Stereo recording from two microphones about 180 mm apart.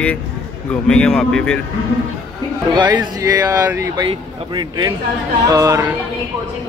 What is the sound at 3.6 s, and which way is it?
Speech, 10° right (ahead or behind).